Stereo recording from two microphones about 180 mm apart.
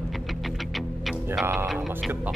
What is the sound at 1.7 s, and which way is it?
Speech, 10° right (ahead or behind).